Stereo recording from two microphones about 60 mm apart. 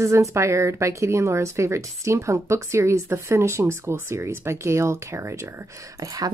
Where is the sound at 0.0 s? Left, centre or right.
Right.